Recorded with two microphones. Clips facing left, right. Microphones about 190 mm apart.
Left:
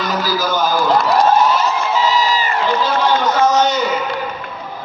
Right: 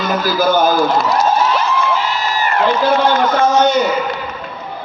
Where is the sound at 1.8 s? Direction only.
55° right (ahead or behind).